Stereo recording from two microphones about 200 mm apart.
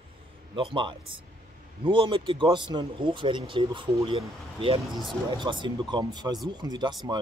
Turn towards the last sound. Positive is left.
turn(degrees=-20)  # may be behind; listen again after turning